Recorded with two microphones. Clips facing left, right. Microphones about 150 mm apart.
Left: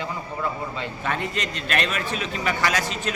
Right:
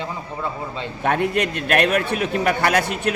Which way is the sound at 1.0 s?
60° right (ahead or behind).